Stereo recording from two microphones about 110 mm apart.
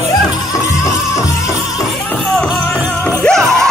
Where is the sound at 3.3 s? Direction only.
5° left (ahead or behind).